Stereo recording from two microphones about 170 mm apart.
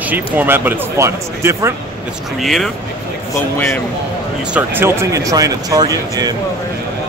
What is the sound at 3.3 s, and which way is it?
Speech, 15° left (ahead or behind).